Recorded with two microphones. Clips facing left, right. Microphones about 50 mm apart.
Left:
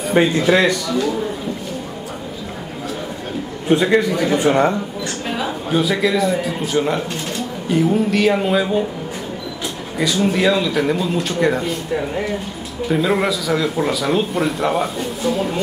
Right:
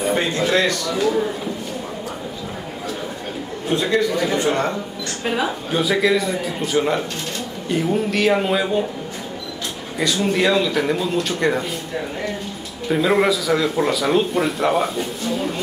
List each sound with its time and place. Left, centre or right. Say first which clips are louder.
0.5 s speech: left 2 dB; centre
0.8 s speech: even; centre
3.6 s a man's voice: left 4 dB; centre
4.4 s speech: left 5 dB; centre
5.2 s speech: right 3 dB; centre
9.9 s speech: left 2 dB; centre
12.8 s speech: even; centre